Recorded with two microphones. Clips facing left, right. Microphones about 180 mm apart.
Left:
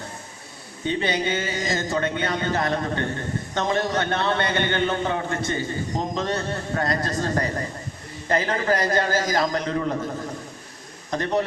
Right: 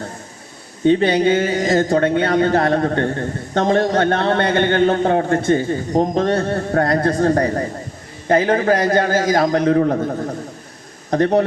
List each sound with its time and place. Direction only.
0.9 s a man's voice: 55° right (ahead or behind)